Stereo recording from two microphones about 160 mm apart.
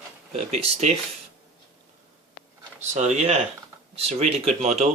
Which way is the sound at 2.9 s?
45° right (ahead or behind).